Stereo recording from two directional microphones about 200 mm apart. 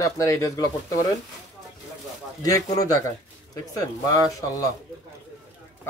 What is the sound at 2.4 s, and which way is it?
Speech, 15° left (ahead or behind).